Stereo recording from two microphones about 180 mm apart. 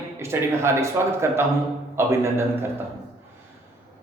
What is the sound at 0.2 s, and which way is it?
A man's voice, 15° right (ahead or behind).